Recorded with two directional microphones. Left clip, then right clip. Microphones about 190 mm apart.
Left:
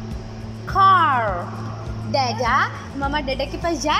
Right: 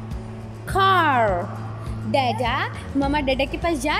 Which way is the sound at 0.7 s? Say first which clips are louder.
Left 3 dB; 20° right (ahead or behind).